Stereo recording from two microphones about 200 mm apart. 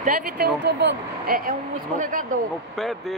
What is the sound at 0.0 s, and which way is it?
A woman's voice, 40° right (ahead or behind).